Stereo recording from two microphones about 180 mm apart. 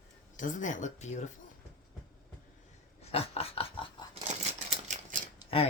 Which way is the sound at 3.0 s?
35° left (ahead or behind).